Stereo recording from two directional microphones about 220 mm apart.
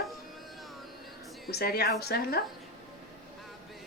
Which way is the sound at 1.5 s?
45° left (ahead or behind).